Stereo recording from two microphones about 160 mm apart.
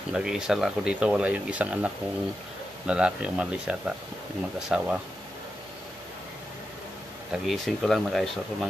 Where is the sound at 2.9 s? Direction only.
5° right (ahead or behind).